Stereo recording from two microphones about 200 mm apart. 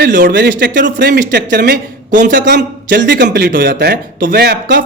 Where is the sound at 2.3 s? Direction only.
55° right (ahead or behind).